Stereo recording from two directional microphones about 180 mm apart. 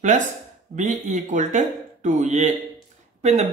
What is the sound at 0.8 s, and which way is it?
Speech, 40° right (ahead or behind).